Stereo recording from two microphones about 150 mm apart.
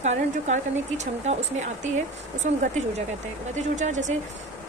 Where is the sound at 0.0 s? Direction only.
50° right (ahead or behind).